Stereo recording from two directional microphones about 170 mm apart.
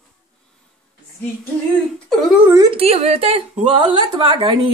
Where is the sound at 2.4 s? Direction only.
20° right (ahead or behind).